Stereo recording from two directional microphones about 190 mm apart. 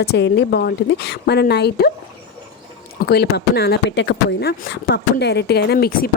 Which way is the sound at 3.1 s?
60° left (ahead or behind).